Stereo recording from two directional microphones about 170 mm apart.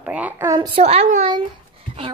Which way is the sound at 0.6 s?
35° right (ahead or behind).